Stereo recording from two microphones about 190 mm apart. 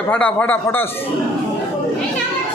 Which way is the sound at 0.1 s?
10° left (ahead or behind).